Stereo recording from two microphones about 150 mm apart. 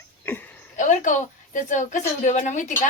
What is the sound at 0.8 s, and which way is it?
A woman's voice, 55° left (ahead or behind).